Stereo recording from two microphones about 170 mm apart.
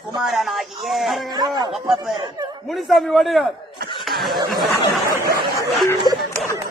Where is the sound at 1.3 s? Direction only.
25° right (ahead or behind).